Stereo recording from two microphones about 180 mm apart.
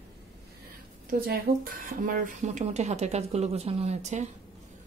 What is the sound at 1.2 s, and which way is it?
Speech, 55° right (ahead or behind).